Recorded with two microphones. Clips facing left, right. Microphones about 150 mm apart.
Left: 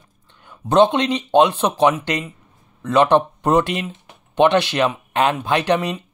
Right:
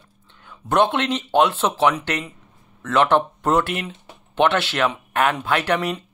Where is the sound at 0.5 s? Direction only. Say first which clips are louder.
Left 4 dB; 20° left (ahead or behind).